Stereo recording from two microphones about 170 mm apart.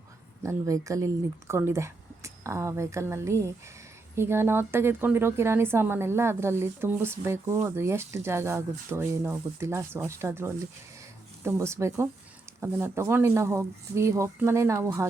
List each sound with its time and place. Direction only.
0.4 s a woman's voice: 20° right (ahead or behind)